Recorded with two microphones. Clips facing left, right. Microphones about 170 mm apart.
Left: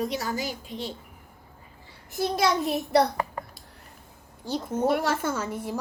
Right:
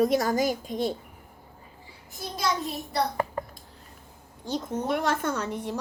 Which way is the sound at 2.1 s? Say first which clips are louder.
Left 5 dB; 70° left (ahead or behind).